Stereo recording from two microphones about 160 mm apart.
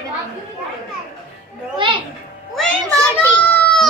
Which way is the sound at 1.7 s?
30° right (ahead or behind).